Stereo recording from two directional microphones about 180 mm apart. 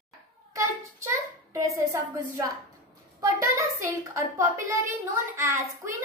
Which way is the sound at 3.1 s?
15° right (ahead or behind).